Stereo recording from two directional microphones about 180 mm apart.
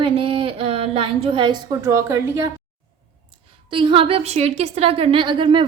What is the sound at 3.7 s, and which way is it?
A woman's voice, 30° right (ahead or behind).